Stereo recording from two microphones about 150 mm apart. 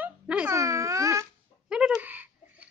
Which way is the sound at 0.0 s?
10° right (ahead or behind).